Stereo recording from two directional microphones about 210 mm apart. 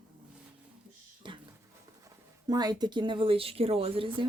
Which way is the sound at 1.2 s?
25° right (ahead or behind).